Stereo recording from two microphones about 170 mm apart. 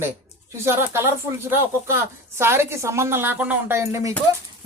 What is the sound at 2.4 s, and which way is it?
Speech, 15° right (ahead or behind).